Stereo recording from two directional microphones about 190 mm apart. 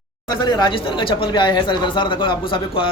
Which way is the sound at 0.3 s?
20° left (ahead or behind).